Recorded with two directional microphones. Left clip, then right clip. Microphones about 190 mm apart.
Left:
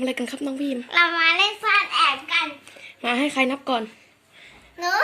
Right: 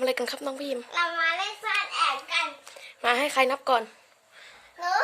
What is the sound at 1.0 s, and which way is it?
Child singing, 20° left (ahead or behind).